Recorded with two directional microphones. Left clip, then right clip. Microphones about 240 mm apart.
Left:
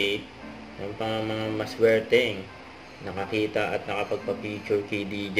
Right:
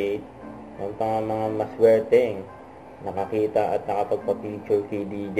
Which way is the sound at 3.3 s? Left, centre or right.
Left.